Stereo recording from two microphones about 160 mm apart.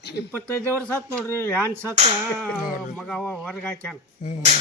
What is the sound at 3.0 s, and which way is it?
Speech, 10° left (ahead or behind).